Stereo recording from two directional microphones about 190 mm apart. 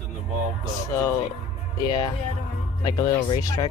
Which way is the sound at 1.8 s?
20° left (ahead or behind).